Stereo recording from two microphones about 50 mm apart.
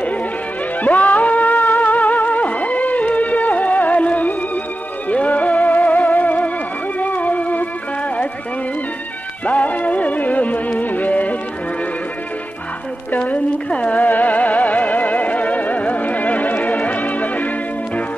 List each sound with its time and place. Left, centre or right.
0.8 s music: left
9.5 s music: left
13.1 s music: left